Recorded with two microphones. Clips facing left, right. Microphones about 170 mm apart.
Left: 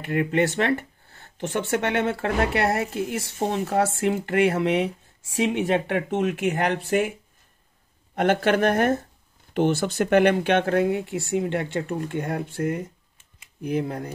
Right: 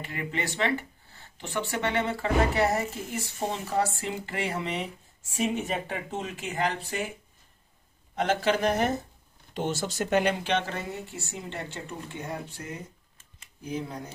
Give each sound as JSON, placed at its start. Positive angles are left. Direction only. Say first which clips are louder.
{"t": 0.0, "sound": "speech", "louder": "left 11 dB", "side_deg": 60}
{"t": 8.2, "sound": "speech", "louder": "left 5 dB", "side_deg": 60}
{"t": 13.6, "sound": "speech", "louder": "left 8 dB", "side_deg": 60}